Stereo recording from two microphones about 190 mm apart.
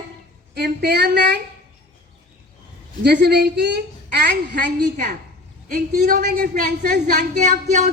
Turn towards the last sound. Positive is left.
turn(degrees=-40)  # may be behind; listen again after turning